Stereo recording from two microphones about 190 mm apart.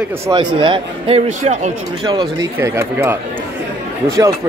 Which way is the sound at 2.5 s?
15° right (ahead or behind).